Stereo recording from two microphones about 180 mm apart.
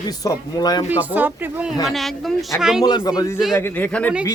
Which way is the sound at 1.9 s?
Centre (ahead or behind).